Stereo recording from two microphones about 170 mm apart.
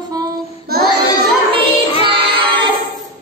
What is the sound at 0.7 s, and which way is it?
Child singing, 65° right (ahead or behind).